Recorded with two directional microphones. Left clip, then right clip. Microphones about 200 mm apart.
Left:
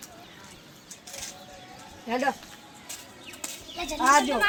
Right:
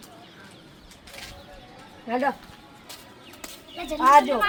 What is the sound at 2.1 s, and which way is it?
Speech, 20° left (ahead or behind).